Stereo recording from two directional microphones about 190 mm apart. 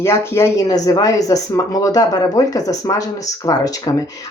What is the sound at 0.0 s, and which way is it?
Speech, 15° left (ahead or behind).